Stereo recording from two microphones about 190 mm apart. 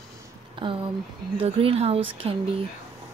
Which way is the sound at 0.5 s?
25° right (ahead or behind).